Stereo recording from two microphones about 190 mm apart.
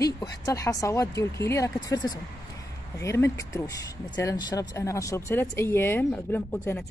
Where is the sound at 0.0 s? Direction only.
15° left (ahead or behind).